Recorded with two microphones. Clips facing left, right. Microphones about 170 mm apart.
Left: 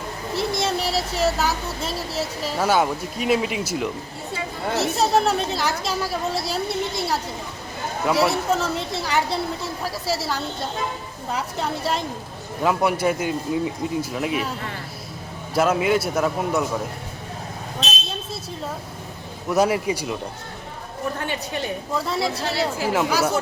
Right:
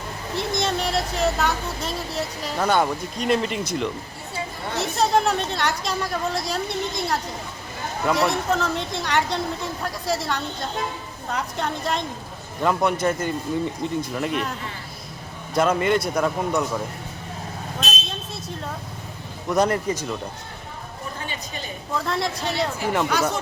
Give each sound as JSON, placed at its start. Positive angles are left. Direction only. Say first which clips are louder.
{"t": 0.3, "sound": "speech", "louder": "left 1 dB", "side_deg": 5}
{"t": 15.5, "sound": "speech", "louder": "left 1 dB", "side_deg": 5}
{"t": 19.5, "sound": "speech", "louder": "left 1 dB", "side_deg": 5}
{"t": 21.2, "sound": "a woman's voice", "louder": "left 6 dB", "side_deg": 65}
{"t": 21.9, "sound": "speech", "louder": "even", "side_deg": 5}